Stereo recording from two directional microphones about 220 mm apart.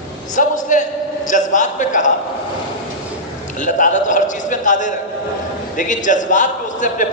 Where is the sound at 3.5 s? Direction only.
35° left (ahead or behind).